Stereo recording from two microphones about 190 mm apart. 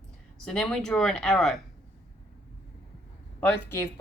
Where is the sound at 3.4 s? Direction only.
10° left (ahead or behind).